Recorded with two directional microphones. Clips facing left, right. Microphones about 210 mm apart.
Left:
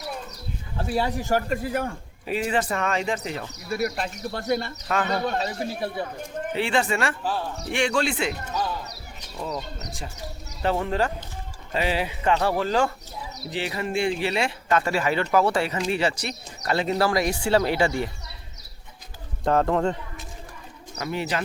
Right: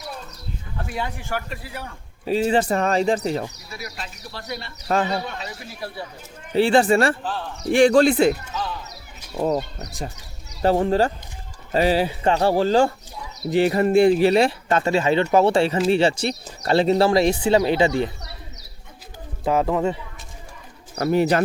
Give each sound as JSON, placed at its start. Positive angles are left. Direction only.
{"t": 0.8, "sound": "speech", "side_deg": 35}
{"t": 2.2, "sound": "speech", "side_deg": -30}
{"t": 3.7, "sound": "speech", "side_deg": 55}
{"t": 4.9, "sound": "speech", "side_deg": -35}
{"t": 6.0, "sound": "speech", "side_deg": 50}
{"t": 6.5, "sound": "speech", "side_deg": -35}
{"t": 9.4, "sound": "speech", "side_deg": -55}
{"t": 10.6, "sound": "speech", "side_deg": -35}
{"t": 13.5, "sound": "speech", "side_deg": -45}
{"t": 19.5, "sound": "speech", "side_deg": -5}
{"t": 20.9, "sound": "speech", "side_deg": -40}